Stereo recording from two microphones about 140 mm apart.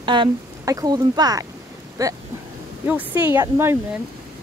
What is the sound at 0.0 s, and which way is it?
Speech, 35° right (ahead or behind).